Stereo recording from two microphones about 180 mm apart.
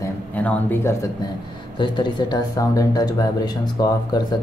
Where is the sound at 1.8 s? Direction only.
25° left (ahead or behind).